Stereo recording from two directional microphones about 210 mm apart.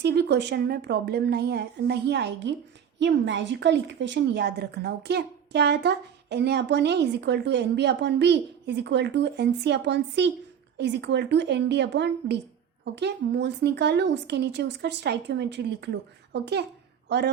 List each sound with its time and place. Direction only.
0.0 s a woman's voice: 50° right (ahead or behind)